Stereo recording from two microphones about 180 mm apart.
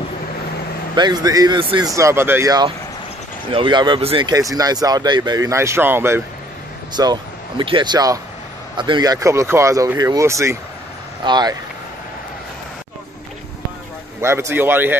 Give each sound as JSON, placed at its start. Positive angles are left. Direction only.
{"t": 0.9, "sound": "speech", "side_deg": -20}
{"t": 2.0, "sound": "speech", "side_deg": -15}
{"t": 7.0, "sound": "speech", "side_deg": -25}
{"t": 14.2, "sound": "speech", "side_deg": -15}